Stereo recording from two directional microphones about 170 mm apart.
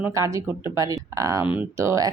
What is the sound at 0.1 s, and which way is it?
Speech, 20° right (ahead or behind).